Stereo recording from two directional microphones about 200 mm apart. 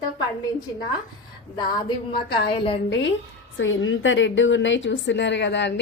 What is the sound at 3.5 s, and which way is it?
A woman's voice, 75° left (ahead or behind).